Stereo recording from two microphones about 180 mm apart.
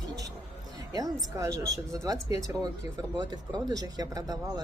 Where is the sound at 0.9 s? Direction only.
20° right (ahead or behind).